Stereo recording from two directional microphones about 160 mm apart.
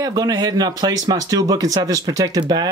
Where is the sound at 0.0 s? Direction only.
25° right (ahead or behind).